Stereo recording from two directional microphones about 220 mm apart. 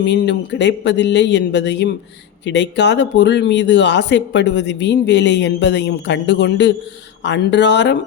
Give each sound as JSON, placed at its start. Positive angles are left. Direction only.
{"t": 0.0, "sound": "speech", "side_deg": 55}